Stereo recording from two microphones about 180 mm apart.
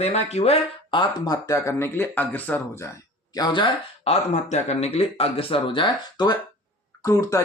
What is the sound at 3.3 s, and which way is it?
Speech, 25° left (ahead or behind).